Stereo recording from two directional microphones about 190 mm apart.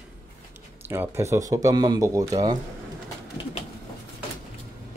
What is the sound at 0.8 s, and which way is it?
Speech, 10° right (ahead or behind).